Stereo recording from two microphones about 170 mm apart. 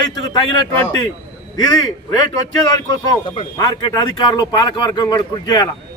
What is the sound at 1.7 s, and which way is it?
Speech, 25° left (ahead or behind).